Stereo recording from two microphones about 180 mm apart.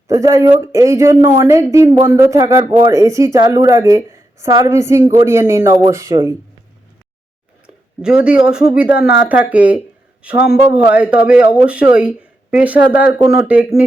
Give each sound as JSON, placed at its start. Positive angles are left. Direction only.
{"t": 0.1, "sound": "speech", "side_deg": -20}
{"t": 8.0, "sound": "speech", "side_deg": -5}